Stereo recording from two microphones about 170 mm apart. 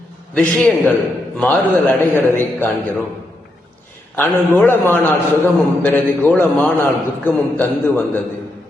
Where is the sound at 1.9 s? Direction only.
15° left (ahead or behind).